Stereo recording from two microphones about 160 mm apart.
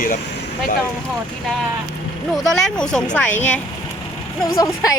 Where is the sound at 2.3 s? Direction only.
5° left (ahead or behind).